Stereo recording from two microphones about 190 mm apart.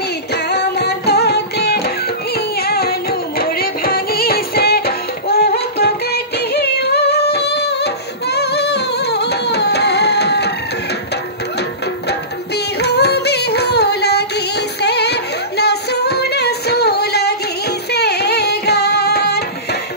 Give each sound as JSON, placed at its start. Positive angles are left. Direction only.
{"t": 0.3, "sound": "music", "side_deg": 60}
{"t": 12.1, "sound": "music", "side_deg": 60}